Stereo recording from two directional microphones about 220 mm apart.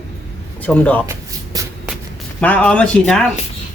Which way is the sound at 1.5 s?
15° right (ahead or behind).